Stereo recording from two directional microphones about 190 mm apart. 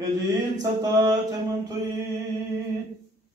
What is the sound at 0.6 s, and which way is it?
Mantra, 20° right (ahead or behind).